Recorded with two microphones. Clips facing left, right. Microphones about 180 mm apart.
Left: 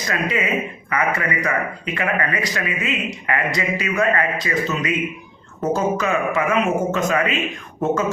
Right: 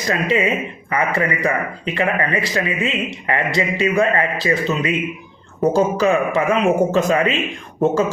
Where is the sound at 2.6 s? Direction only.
30° right (ahead or behind).